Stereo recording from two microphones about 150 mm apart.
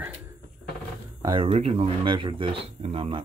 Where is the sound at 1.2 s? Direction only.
40° right (ahead or behind).